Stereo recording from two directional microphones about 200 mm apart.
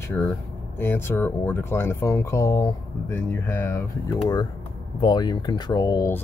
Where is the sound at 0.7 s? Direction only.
10° left (ahead or behind).